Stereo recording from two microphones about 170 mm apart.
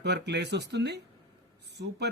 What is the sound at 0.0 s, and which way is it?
Speech, 85° right.